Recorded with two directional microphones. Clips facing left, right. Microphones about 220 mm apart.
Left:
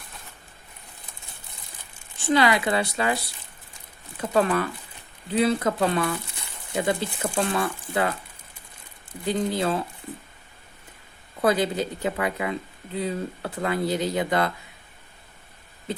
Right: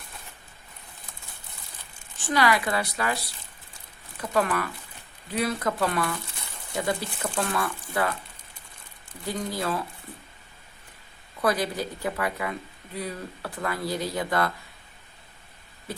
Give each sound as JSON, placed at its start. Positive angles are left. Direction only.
{"t": 2.1, "sound": "speech", "side_deg": 25}
{"t": 4.2, "sound": "speech", "side_deg": 25}
{"t": 9.2, "sound": "speech", "side_deg": 25}
{"t": 11.3, "sound": "speech", "side_deg": 25}